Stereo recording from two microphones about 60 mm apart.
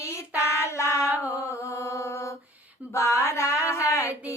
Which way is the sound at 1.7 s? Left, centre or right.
Left.